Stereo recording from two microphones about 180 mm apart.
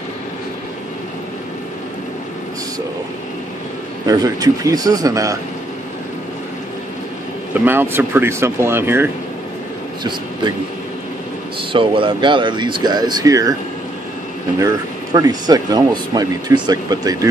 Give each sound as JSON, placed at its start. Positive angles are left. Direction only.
{"t": 4.1, "sound": "speech", "side_deg": -20}
{"t": 7.5, "sound": "speech", "side_deg": -10}
{"t": 11.7, "sound": "speech", "side_deg": -30}
{"t": 15.1, "sound": "speech", "side_deg": -20}